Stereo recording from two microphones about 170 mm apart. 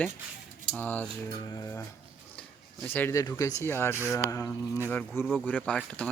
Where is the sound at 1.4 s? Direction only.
20° left (ahead or behind).